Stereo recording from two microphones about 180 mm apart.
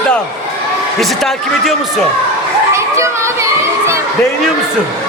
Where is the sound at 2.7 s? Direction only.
15° right (ahead or behind).